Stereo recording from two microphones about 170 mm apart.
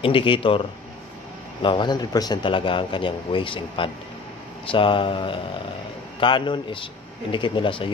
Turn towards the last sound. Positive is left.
turn(degrees=30)  # may be behind; listen again after turning